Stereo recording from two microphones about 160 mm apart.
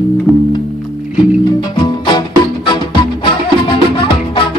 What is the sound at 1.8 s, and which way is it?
Music, 30° left (ahead or behind).